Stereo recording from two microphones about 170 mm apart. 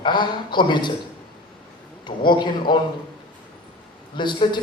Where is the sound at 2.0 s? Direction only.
25° left (ahead or behind).